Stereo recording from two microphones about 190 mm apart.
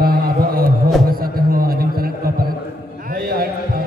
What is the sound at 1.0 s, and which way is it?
Music, 50° right (ahead or behind).